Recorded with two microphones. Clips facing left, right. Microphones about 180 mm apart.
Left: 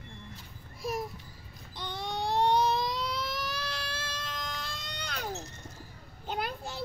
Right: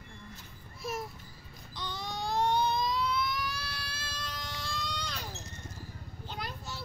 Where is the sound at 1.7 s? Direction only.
60° left (ahead or behind).